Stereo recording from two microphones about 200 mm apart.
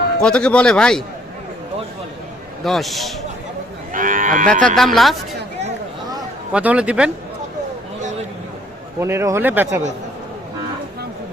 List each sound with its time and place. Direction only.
0.2 s a man's voice: 5° left (ahead or behind)
2.6 s a man's voice: centre (ahead or behind)
3.9 s moo: 40° right (ahead or behind)
4.6 s a man's voice: centre (ahead or behind)
6.5 s a man's voice: 5° right (ahead or behind)
9.0 s speech: 15° right (ahead or behind)